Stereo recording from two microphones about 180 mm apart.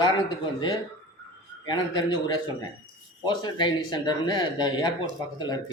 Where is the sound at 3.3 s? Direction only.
25° left (ahead or behind).